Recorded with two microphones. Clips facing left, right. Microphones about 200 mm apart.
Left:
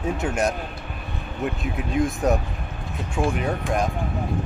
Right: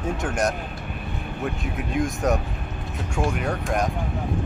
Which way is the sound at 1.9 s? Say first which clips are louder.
Left 2 dB; centre (ahead or behind).